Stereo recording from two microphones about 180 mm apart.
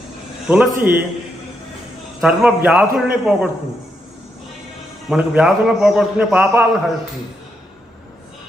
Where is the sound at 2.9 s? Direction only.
10° right (ahead or behind).